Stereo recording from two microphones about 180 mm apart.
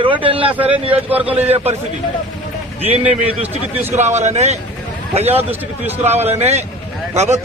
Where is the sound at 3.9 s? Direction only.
40° right (ahead or behind).